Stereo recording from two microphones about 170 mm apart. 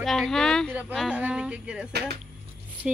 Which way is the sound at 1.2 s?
5° right (ahead or behind).